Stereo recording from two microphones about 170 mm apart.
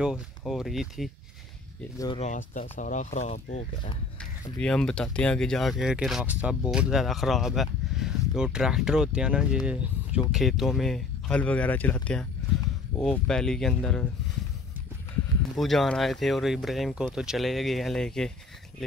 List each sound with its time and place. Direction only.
0.5 s speech: centre (ahead or behind)
2.1 s speech: 45° left (ahead or behind)
4.6 s speech: 5° left (ahead or behind)
15.5 s speech: centre (ahead or behind)